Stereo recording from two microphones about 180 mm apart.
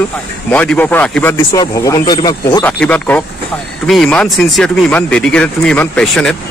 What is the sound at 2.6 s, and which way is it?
Speech, 10° left (ahead or behind).